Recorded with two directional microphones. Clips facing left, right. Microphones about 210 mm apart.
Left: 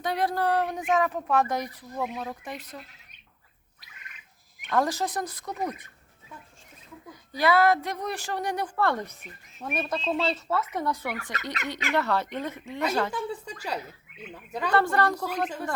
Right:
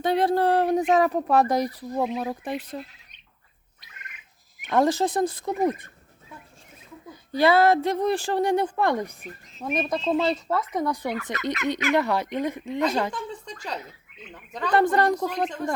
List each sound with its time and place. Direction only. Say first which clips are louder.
0.0 s speech: right 6 dB; 25° right (ahead or behind)
4.7 s a woman's voice: right 5 dB; 25° right (ahead or behind)
7.1 s a woman's voice: right 4 dB; 25° right (ahead or behind)
13.1 s speech: left 1 dB; 5° left (ahead or behind)
14.7 s speech: right 4 dB; 15° right (ahead or behind)
15.3 s speech: right 2 dB; 5° left (ahead or behind)